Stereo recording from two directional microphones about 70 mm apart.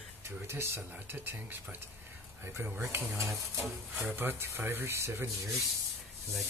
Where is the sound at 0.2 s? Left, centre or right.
Right.